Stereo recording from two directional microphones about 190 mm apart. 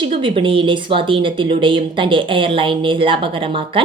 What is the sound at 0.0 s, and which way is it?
Speech, 25° right (ahead or behind).